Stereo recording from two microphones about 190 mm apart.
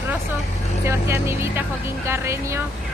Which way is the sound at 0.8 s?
15° right (ahead or behind).